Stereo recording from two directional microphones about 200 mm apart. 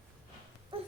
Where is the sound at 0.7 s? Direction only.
25° right (ahead or behind).